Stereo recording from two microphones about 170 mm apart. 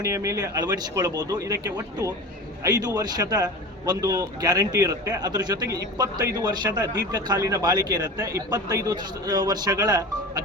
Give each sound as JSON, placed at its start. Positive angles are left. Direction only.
{"t": 0.0, "sound": "speech", "side_deg": -20}